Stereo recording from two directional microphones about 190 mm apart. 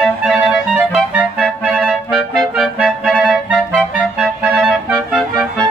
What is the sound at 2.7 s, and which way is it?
Music, 5° right (ahead or behind).